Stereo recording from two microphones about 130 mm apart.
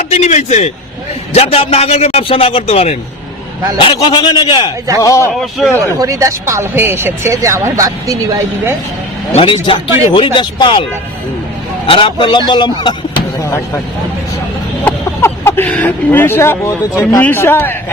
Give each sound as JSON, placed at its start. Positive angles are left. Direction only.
{"t": 0.1, "sound": "a man's voice", "side_deg": 60}
{"t": 1.3, "sound": "a man's voice", "side_deg": 50}
{"t": 3.9, "sound": "speech", "side_deg": 35}
{"t": 4.9, "sound": "speech", "side_deg": 25}
{"t": 5.3, "sound": "speech", "side_deg": 0}
{"t": 5.8, "sound": "speech", "side_deg": -25}
{"t": 9.3, "sound": "a man's voice", "side_deg": 45}
{"t": 11.9, "sound": "speech", "side_deg": 40}
{"t": 14.8, "sound": "a man's voice", "side_deg": 15}